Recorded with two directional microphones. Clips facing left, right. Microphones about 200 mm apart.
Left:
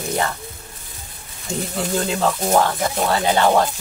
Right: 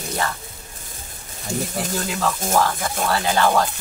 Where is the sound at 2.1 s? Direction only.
25° left (ahead or behind).